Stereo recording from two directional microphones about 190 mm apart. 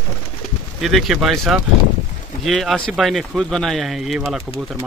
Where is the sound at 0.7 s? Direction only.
Centre (ahead or behind).